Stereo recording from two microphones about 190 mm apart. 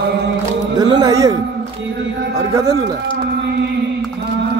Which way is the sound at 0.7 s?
20° right (ahead or behind).